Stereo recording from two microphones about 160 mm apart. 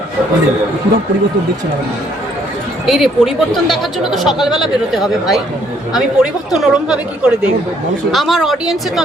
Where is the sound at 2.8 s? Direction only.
Centre (ahead or behind).